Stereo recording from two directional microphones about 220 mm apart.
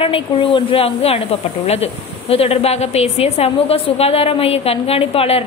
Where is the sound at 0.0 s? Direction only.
25° left (ahead or behind).